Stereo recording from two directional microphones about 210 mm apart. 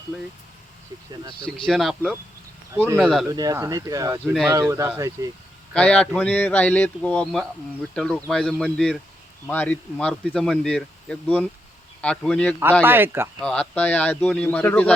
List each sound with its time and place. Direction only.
1.3 s speech: 25° left (ahead or behind)
1.6 s speech: centre (ahead or behind)
2.7 s speech: 10° right (ahead or behind)
3.0 s speech: centre (ahead or behind)
3.2 s speech: 15° right (ahead or behind)
5.7 s speech: 5° left (ahead or behind)
12.8 s speech: 10° right (ahead or behind)
13.4 s speech: 5° left (ahead or behind)